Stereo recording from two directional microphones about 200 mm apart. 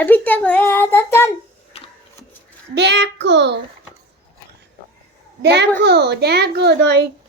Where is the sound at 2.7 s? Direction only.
60° right (ahead or behind).